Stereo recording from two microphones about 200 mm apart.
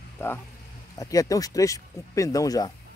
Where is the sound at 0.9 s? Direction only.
15° left (ahead or behind).